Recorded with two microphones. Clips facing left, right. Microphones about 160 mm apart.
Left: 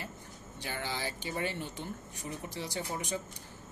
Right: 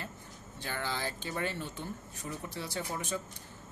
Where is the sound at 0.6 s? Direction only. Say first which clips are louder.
Right 1 dB; 15° left (ahead or behind).